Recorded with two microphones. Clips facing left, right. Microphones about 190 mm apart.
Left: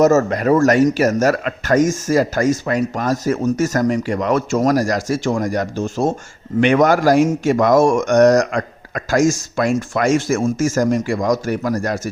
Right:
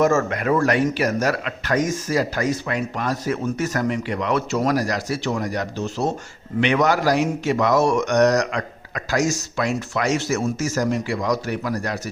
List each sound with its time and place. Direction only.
0.0 s a man's voice: 40° left (ahead or behind)